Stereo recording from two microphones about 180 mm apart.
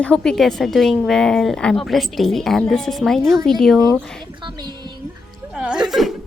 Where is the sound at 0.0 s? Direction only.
5° left (ahead or behind).